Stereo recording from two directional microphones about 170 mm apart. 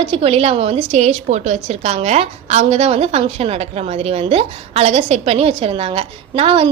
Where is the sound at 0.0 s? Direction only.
35° right (ahead or behind).